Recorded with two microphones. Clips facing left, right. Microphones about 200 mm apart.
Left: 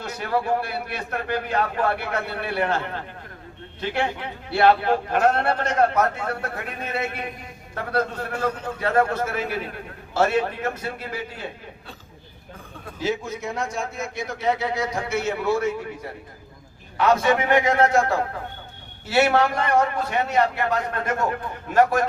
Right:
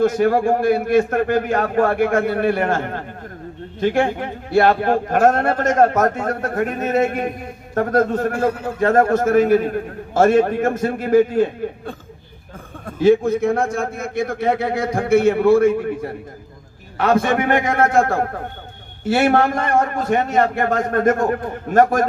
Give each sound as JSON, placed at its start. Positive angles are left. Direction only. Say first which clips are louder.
{"t": 0.0, "sound": "a man's voice", "louder": "right 11 dB", "side_deg": -45}